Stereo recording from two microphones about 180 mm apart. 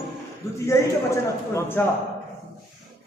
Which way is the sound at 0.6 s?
15° left (ahead or behind).